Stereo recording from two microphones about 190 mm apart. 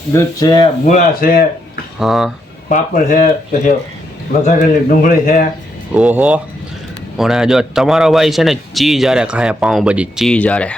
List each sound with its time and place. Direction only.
0.1 s speech: 15° left (ahead or behind)
0.9 s speech: 45° left (ahead or behind)
2.0 s a man's voice: centre (ahead or behind)
2.6 s speech: 40° left (ahead or behind)
4.4 s speech: 45° left (ahead or behind)
5.9 s a man's voice: 10° right (ahead or behind)